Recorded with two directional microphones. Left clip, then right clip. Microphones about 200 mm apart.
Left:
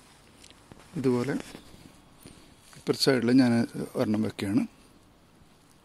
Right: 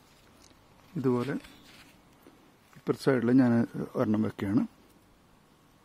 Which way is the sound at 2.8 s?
25° right (ahead or behind).